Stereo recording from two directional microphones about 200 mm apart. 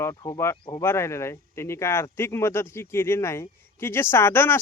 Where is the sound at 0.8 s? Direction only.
15° left (ahead or behind).